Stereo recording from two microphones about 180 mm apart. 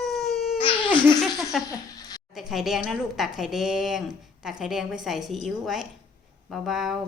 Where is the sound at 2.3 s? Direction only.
Centre (ahead or behind).